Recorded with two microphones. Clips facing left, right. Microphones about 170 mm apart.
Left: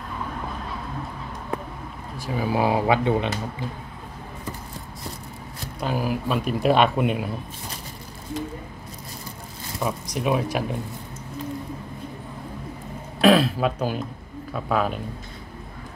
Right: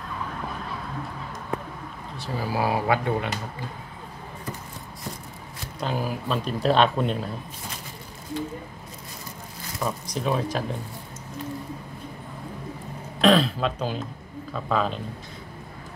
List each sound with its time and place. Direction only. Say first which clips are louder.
2.1 s speech: left 4 dB; 15° left (ahead or behind)
5.8 s speech: left 3 dB; 10° left (ahead or behind)
9.8 s speech: left 2 dB; 10° left (ahead or behind)
13.2 s speech: left 2 dB; 5° left (ahead or behind)